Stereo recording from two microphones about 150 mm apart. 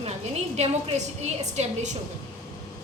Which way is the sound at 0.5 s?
45° right (ahead or behind).